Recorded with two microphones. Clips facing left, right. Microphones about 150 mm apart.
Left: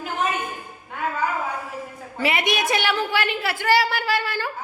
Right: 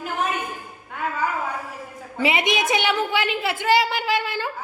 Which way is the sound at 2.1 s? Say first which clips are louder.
Right 1 dB; 20° right (ahead or behind).